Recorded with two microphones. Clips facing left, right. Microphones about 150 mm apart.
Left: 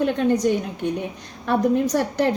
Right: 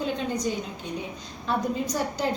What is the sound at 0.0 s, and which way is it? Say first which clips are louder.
A woman's voice: left 8 dB; 65° left (ahead or behind).